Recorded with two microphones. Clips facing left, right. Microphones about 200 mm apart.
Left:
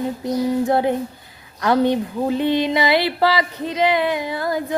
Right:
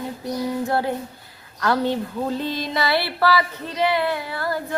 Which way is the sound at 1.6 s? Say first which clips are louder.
Left 4 dB; 15° left (ahead or behind).